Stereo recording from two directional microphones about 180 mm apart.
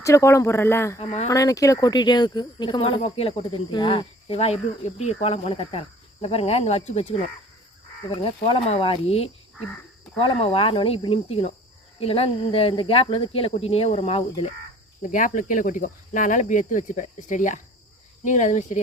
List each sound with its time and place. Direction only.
0.0 s speech: 15° left (ahead or behind)
0.9 s speech: 35° left (ahead or behind)
1.3 s speech: 20° left (ahead or behind); by 14.5 s 35° left (ahead or behind)
15.1 s speech: 45° left (ahead or behind)